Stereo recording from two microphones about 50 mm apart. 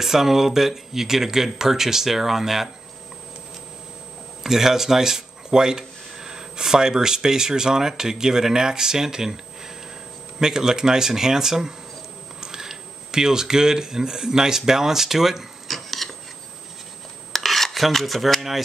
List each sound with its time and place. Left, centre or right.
0.0 s speech: centre
4.4 s speech: centre
10.4 s speech: centre
17.3 s filing: centre